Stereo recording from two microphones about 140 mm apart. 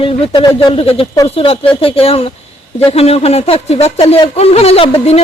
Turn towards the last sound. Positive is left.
turn(degrees=45)  # may be behind; listen again after turning